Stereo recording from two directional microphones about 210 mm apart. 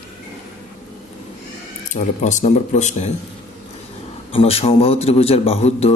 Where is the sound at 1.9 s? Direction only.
35° left (ahead or behind).